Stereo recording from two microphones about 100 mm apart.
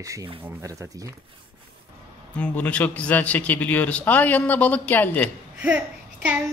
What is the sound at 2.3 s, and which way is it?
Speech, 15° left (ahead or behind).